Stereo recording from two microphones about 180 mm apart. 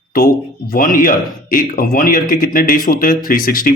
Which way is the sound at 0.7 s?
50° left (ahead or behind).